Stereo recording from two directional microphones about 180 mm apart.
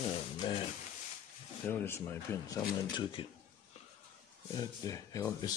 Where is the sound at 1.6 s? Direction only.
10° left (ahead or behind).